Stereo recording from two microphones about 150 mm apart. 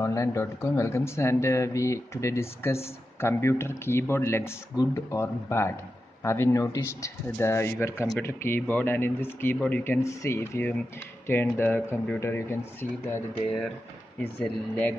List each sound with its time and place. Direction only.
0.0 s speech: 20° left (ahead or behind)
10.0 s speech: 20° left (ahead or behind)
14.4 s speech: 10° left (ahead or behind)